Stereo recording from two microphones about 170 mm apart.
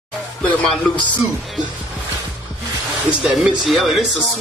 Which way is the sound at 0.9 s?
25° left (ahead or behind).